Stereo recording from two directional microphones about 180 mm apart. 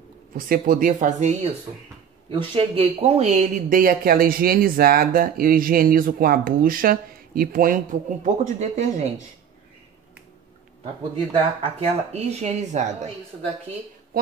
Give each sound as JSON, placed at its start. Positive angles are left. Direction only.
{"t": 0.3, "sound": "speech", "side_deg": -50}
{"t": 2.3, "sound": "speech", "side_deg": -30}
{"t": 11.3, "sound": "speech", "side_deg": -35}